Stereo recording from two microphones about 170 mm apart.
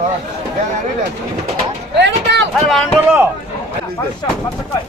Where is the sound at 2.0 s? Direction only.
90° right.